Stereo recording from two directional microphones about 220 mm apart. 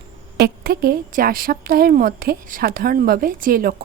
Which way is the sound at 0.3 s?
45° right (ahead or behind).